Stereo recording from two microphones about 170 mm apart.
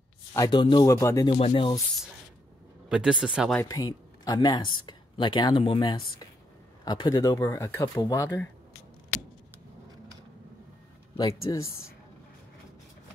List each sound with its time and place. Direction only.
0.3 s speech: 20° left (ahead or behind)
1.2 s music: 30° left (ahead or behind)
2.9 s speech: 5° right (ahead or behind)
3.6 s speech: 20° left (ahead or behind)
11.1 s speech: 20° left (ahead or behind)